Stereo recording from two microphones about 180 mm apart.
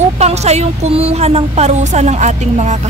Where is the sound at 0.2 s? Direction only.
35° right (ahead or behind).